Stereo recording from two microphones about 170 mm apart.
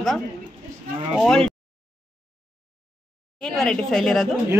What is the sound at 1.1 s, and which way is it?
Speech, 5° left (ahead or behind).